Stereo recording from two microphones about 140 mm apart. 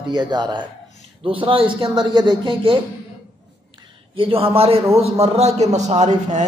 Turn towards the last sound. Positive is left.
turn(degrees=-55)  # may be behind; listen again after turning